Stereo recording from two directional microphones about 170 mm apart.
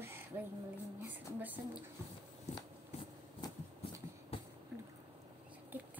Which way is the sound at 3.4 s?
25° left (ahead or behind).